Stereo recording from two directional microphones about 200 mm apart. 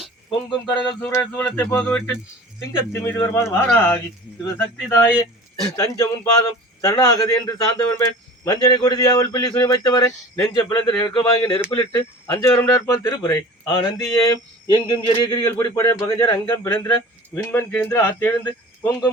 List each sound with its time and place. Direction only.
0.3 s speech: 25° left (ahead or behind)
1.0 s speech: 10° left (ahead or behind)